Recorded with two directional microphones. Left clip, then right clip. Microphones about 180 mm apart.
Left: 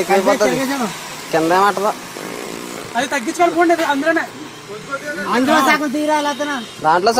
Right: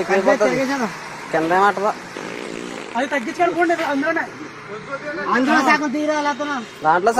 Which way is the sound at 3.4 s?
Centre (ahead or behind).